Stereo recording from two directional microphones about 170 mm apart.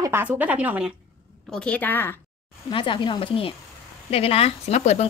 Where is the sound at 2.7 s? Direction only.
30° left (ahead or behind).